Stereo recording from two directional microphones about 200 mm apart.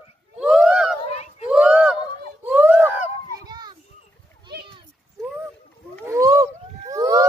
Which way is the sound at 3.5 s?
20° right (ahead or behind).